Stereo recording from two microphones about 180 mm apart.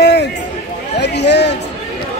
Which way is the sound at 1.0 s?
70° left (ahead or behind).